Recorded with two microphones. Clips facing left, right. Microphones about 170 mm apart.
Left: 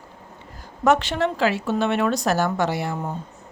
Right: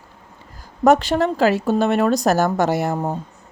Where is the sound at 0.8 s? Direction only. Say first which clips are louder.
Right 4 dB; 40° right (ahead or behind).